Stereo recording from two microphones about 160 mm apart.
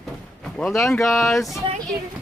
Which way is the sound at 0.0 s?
5° left (ahead or behind).